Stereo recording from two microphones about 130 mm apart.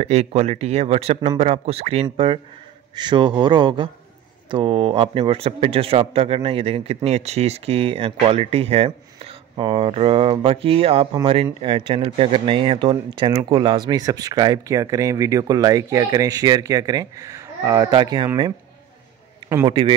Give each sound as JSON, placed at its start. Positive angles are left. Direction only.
{"t": 0.0, "sound": "speech", "side_deg": -55}